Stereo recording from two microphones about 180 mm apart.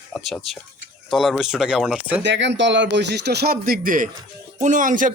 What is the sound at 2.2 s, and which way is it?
A man's voice, 80° right.